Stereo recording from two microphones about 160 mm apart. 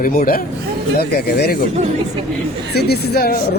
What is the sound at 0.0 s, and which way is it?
Speech, 60° left (ahead or behind).